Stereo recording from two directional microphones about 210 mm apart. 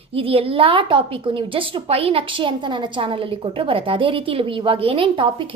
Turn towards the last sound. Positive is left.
turn(degrees=-25)  # may be behind; listen again after turning